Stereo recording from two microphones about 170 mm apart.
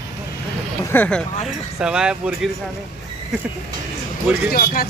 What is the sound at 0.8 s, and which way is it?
Speech, 15° left (ahead or behind).